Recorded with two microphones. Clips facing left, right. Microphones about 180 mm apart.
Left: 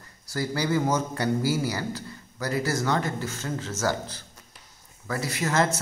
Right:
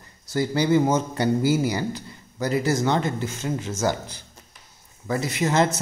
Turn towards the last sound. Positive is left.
turn(degrees=-20)  # may be behind; listen again after turning